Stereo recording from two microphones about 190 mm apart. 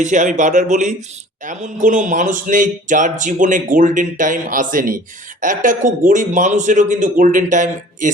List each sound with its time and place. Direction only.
0.0 s speech: 40° right (ahead or behind)